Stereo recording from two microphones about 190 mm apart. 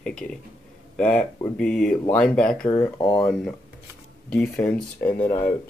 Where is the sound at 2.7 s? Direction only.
15° left (ahead or behind).